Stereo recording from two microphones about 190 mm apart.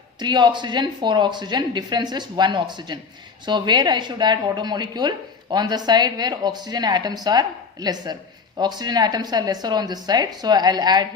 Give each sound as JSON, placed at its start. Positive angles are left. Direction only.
{"t": 0.2, "sound": "a woman's voice", "side_deg": -25}